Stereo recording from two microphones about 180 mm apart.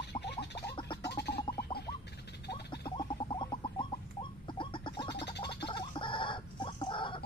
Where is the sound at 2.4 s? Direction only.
65° left (ahead or behind).